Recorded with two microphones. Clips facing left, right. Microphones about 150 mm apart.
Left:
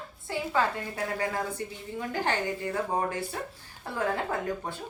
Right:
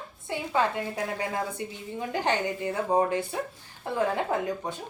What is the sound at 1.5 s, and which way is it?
A woman's voice, 20° right (ahead or behind).